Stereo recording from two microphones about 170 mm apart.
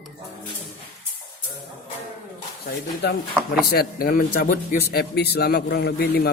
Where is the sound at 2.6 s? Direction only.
75° left (ahead or behind).